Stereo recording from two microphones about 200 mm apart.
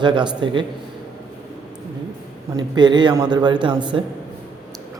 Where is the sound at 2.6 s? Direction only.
20° right (ahead or behind).